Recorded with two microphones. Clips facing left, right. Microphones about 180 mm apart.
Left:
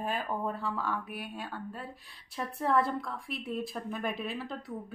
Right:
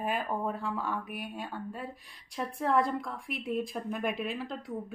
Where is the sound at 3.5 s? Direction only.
Centre (ahead or behind).